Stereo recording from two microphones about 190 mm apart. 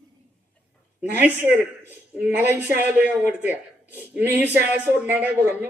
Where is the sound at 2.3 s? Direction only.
10° right (ahead or behind).